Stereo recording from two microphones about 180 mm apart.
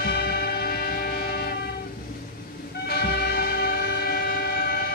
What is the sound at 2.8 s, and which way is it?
Train, 60° left (ahead or behind).